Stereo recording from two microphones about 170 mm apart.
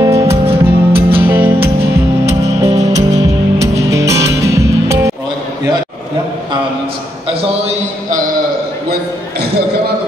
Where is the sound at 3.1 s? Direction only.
20° right (ahead or behind).